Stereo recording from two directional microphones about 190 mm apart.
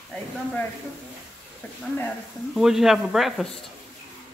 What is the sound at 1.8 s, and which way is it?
A woman's voice, 5° left (ahead or behind).